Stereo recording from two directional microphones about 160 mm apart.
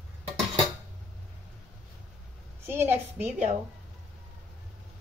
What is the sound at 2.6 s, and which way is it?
Speech, 15° right (ahead or behind).